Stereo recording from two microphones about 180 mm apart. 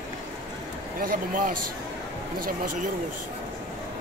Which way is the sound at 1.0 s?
50° right (ahead or behind).